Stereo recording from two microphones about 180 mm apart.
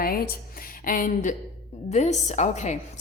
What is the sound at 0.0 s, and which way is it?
A woman's voice, 55° left (ahead or behind).